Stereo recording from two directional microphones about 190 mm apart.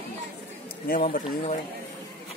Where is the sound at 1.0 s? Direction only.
35° left (ahead or behind).